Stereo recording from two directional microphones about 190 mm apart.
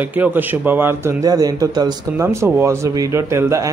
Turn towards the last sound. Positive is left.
turn(degrees=-15)  # may be behind; listen again after turning